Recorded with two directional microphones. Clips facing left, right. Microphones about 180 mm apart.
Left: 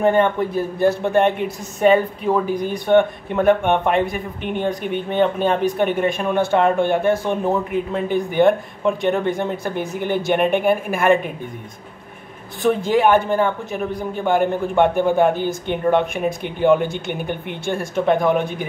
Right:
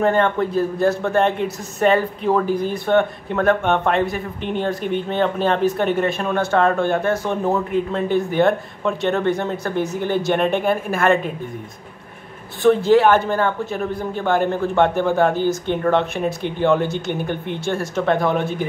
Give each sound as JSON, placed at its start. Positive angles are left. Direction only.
{"t": 0.0, "sound": "speech", "side_deg": 15}
{"t": 2.2, "sound": "speech", "side_deg": 5}
{"t": 2.9, "sound": "speech", "side_deg": 15}
{"t": 12.9, "sound": "speech", "side_deg": 15}
{"t": 16.8, "sound": "speech", "side_deg": 55}
{"t": 17.1, "sound": "speech", "side_deg": 15}